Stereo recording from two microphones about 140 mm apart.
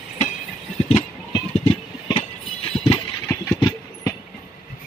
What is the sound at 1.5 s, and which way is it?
Vehicle, 50° left (ahead or behind).